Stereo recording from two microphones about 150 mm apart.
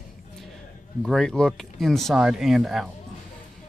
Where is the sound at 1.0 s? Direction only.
Centre (ahead or behind).